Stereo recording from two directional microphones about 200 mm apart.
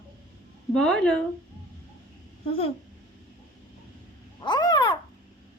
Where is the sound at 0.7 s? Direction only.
5° left (ahead or behind).